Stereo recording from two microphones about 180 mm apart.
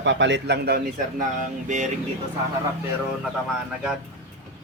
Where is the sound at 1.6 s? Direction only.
40° right (ahead or behind).